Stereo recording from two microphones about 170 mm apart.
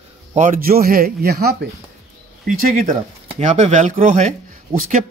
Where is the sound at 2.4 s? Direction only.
55° right (ahead or behind).